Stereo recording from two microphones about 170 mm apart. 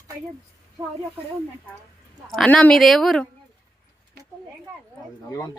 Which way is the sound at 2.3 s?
5° left (ahead or behind).